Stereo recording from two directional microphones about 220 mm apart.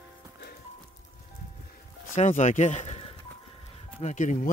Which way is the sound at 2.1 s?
30° left (ahead or behind).